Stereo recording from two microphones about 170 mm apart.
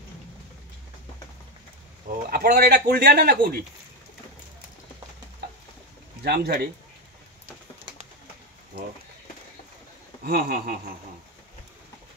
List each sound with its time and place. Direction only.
2.0 s speech: 60° right (ahead or behind)
6.2 s speech: 70° right (ahead or behind)
10.2 s speech: 65° right (ahead or behind)